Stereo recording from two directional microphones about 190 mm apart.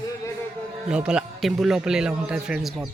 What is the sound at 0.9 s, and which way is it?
A man's voice, 5° right (ahead or behind).